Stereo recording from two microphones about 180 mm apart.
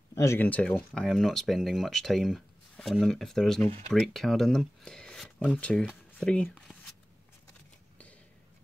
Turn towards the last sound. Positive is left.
turn(degrees=5)  # may be behind; listen again after turning